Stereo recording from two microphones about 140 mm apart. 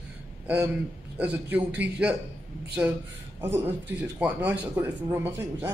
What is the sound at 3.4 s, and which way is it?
Speech, 15° right (ahead or behind).